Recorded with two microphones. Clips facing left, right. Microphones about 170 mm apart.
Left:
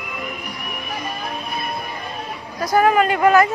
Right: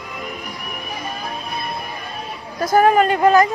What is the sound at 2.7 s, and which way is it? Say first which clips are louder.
Speech: right 2 dB; 40° right (ahead or behind).